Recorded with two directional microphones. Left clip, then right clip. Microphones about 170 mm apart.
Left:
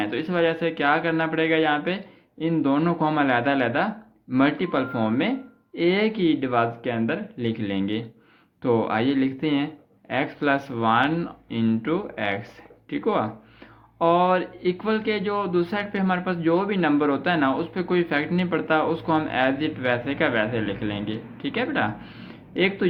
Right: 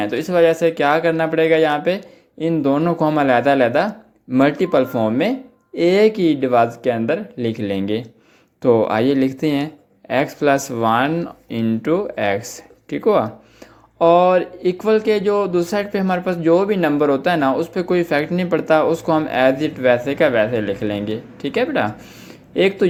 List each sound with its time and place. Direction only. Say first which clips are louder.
0.0 s speech: right 8 dB; 45° right (ahead or behind)